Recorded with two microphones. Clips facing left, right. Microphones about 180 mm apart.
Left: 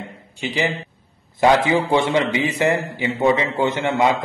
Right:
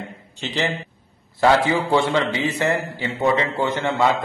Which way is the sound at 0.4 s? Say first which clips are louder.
Left 2 dB; 10° left (ahead or behind).